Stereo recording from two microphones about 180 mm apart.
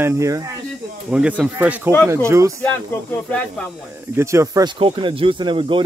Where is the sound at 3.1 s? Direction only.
10° left (ahead or behind).